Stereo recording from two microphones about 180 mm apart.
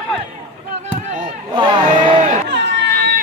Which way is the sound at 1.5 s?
25° right (ahead or behind).